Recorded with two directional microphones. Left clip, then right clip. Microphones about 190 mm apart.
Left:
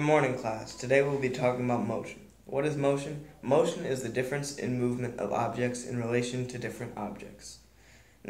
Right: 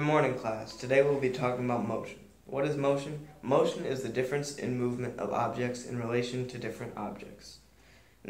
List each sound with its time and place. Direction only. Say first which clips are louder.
0.0 s speech: left 2 dB; 20° left (ahead or behind)